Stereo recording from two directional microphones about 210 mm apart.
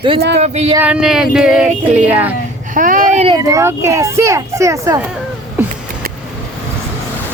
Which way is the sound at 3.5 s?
15° right (ahead or behind).